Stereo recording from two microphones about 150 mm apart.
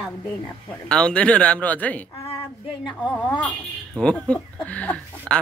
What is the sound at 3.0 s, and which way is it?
Speech, 10° left (ahead or behind).